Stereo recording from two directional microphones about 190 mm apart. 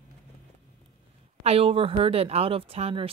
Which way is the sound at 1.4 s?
30° right (ahead or behind).